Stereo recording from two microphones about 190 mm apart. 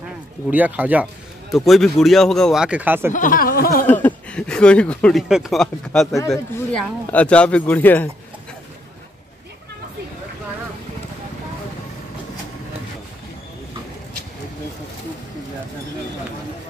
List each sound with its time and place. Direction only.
0.5 s speech: 10° right (ahead or behind)
3.1 s speech: 45° left (ahead or behind)
3.8 s speech: 10° left (ahead or behind)
6.1 s speech: 15° left (ahead or behind)
6.7 s speech: 5° left (ahead or behind)